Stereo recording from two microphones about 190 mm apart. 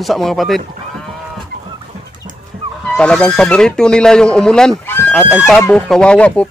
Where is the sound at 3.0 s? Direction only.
5° left (ahead or behind).